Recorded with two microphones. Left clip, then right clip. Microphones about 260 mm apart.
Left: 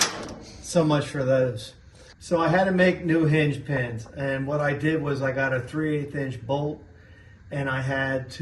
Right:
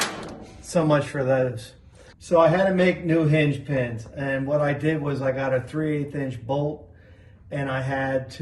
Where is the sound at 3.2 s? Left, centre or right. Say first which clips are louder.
Right 1 dB; left.